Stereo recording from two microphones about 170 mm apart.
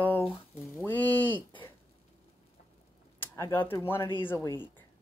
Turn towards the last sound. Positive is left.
turn(degrees=15)  # may be behind; listen again after turning